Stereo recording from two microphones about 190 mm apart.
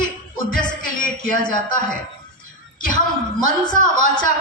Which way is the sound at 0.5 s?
45° left (ahead or behind).